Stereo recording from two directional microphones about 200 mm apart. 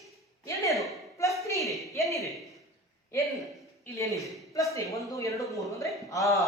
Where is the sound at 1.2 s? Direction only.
15° left (ahead or behind).